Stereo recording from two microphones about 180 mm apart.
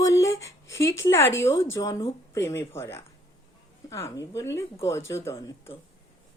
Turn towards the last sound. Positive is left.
turn(degrees=15)  # may be behind; listen again after turning